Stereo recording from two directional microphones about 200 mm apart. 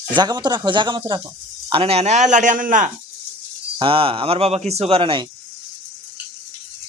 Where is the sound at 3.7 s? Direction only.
25° right (ahead or behind).